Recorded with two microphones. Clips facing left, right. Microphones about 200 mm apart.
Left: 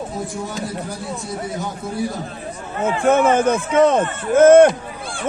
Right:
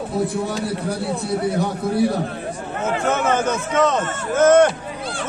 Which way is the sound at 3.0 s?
55° left (ahead or behind).